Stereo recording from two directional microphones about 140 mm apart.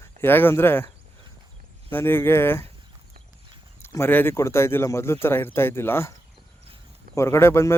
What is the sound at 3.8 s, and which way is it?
Speech, 15° left (ahead or behind).